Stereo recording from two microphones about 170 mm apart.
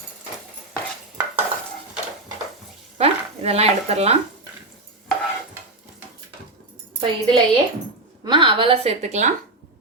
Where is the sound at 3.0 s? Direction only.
35° right (ahead or behind).